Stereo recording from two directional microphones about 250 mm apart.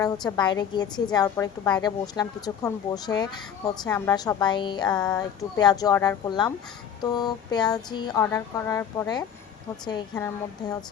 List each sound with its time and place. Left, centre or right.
0.0 s a woman's voice: centre